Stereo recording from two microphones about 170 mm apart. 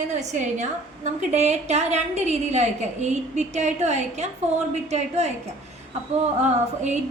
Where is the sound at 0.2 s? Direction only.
45° right (ahead or behind).